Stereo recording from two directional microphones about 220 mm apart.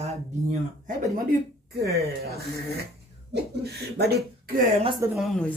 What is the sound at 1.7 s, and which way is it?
Speech, 45° right (ahead or behind).